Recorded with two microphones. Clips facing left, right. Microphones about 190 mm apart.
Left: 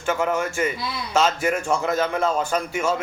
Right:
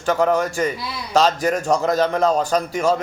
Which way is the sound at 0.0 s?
35° right (ahead or behind).